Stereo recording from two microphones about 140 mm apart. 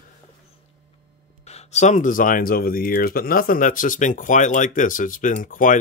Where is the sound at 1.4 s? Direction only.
50° left (ahead or behind).